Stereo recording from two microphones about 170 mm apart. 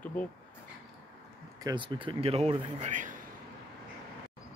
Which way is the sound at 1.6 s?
25° right (ahead or behind).